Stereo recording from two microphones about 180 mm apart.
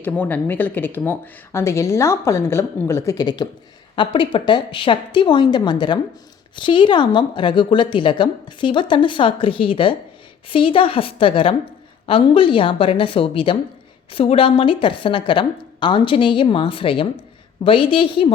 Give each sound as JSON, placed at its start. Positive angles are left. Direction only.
{"t": 0.0, "sound": "a woman's voice", "side_deg": 10}